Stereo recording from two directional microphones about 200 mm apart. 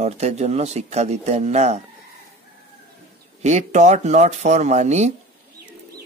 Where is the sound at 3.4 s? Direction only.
35° right (ahead or behind).